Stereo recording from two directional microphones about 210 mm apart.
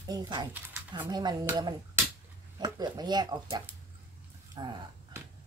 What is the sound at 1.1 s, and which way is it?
Speech, 20° right (ahead or behind).